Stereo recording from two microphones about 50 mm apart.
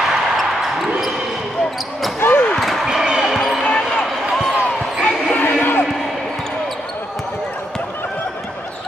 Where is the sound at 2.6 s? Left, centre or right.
Centre.